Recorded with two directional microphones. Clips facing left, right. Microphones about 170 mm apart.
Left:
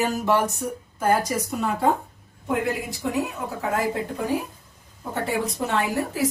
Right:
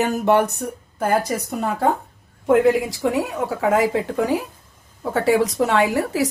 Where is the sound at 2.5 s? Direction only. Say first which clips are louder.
Right 10 dB; 90° right.